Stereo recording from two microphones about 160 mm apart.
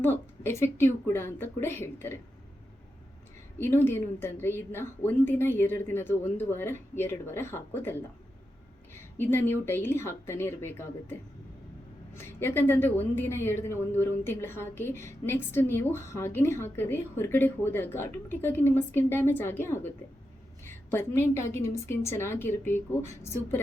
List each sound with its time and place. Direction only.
0.0 s a woman's voice: 15° left (ahead or behind)
3.6 s a woman's voice: 15° left (ahead or behind)
9.1 s a woman's voice: 15° left (ahead or behind)